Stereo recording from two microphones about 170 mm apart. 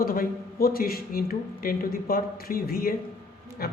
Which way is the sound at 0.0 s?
60° left (ahead or behind).